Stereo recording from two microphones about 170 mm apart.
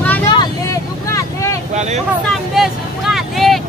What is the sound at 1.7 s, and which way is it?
Speech, 40° right (ahead or behind).